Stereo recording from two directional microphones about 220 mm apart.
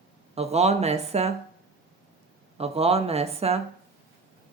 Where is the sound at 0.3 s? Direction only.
30° right (ahead or behind).